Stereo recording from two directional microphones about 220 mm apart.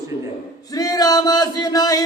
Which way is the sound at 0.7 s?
15° left (ahead or behind).